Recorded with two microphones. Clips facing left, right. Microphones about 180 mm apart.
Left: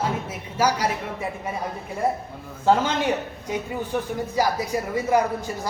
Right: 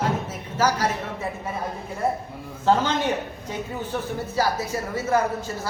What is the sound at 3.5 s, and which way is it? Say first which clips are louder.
A woman's voice: left 3 dB; 15° left (ahead or behind).